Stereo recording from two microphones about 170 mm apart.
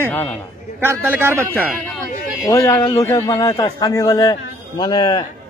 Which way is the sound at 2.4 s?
20° left (ahead or behind).